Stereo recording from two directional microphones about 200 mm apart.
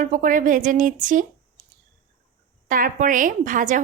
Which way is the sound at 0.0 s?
40° right (ahead or behind).